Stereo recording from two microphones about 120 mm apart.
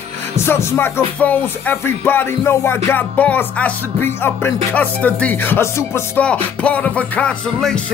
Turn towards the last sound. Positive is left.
turn(degrees=10)  # may be behind; listen again after turning